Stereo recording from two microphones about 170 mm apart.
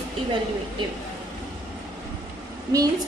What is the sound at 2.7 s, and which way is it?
Speech, 25° right (ahead or behind).